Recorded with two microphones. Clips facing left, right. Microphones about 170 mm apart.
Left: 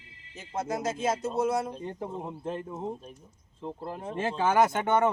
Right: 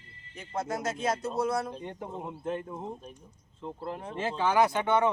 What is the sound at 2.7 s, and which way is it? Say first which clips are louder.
Speech: left 3 dB; 5° left (ahead or behind).